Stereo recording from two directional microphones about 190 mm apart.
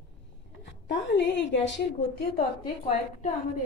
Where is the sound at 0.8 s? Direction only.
70° left (ahead or behind).